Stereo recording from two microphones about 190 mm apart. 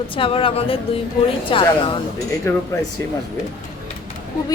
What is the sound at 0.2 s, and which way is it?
A woman's voice, 30° left (ahead or behind).